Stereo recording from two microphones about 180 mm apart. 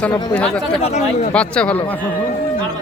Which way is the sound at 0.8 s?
40° left (ahead or behind).